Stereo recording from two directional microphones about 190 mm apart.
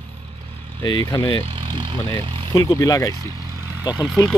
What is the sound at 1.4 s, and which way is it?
Speech, 25° right (ahead or behind).